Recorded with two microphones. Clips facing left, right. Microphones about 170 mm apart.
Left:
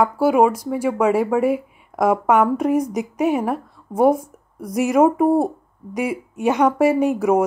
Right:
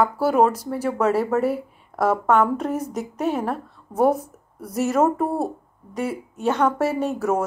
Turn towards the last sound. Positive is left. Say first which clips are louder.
# left 6 dB
turn(degrees=15)  # may be behind; listen again after turning